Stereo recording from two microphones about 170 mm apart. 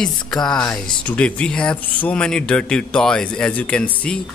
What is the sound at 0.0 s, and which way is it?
A man's voice, 5° left (ahead or behind).